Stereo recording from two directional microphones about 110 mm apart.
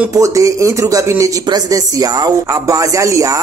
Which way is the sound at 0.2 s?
30° right (ahead or behind).